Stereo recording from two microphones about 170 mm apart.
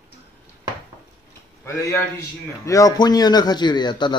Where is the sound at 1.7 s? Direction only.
15° left (ahead or behind).